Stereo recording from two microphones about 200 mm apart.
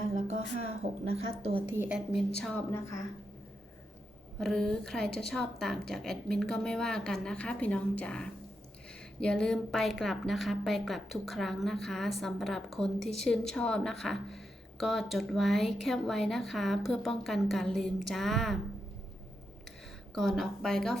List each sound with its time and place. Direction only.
0.1 s a woman's voice: 35° right (ahead or behind)
1.6 s a woman's voice: 10° right (ahead or behind)
2.4 s speech: 5° left (ahead or behind)
4.4 s a woman's voice: centre (ahead or behind)
20.1 s a woman's voice: centre (ahead or behind)